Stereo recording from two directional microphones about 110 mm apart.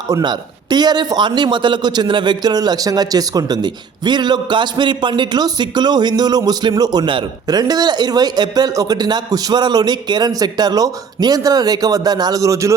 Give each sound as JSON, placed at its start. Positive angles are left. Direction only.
{"t": 0.1, "sound": "a man's voice", "side_deg": -40}